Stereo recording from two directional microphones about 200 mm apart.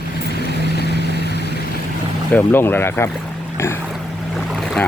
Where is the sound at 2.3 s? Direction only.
10° left (ahead or behind).